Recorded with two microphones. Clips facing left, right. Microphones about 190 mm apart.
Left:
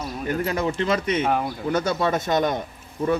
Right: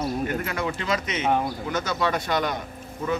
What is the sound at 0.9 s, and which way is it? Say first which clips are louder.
Speech: left 5 dB; 55° left (ahead or behind).